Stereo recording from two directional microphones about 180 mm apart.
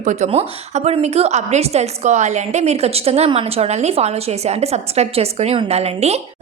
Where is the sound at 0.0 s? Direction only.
40° right (ahead or behind).